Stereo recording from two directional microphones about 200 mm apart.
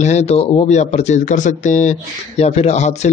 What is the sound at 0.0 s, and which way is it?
Speech, 35° left (ahead or behind).